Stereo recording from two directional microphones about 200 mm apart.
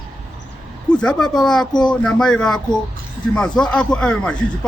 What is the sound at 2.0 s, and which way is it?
Speech, 5° left (ahead or behind).